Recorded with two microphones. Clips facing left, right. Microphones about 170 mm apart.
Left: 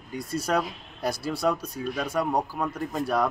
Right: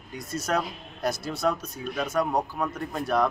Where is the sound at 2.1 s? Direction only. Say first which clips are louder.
Right 1 dB; 10° left (ahead or behind).